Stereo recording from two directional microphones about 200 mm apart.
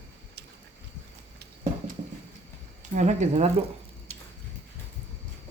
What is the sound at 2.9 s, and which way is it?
Speech, 35° right (ahead or behind).